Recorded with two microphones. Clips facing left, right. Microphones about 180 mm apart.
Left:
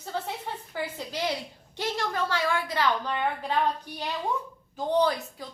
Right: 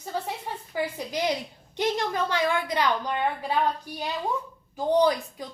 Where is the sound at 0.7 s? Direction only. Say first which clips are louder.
Right 6 dB; 15° right (ahead or behind).